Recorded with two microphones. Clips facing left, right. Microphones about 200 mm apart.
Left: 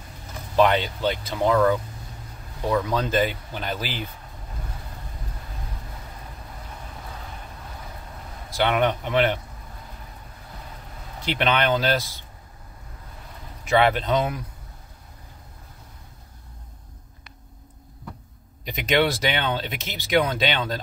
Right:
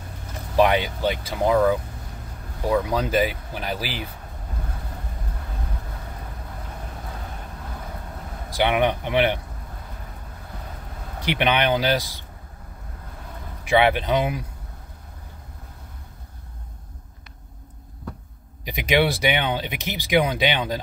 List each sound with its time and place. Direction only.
0.6 s speech: 10° right (ahead or behind)
8.5 s speech: 10° right (ahead or behind)
11.2 s speech: 15° right (ahead or behind)
13.7 s speech: 10° right (ahead or behind)
18.6 s speech: 10° right (ahead or behind)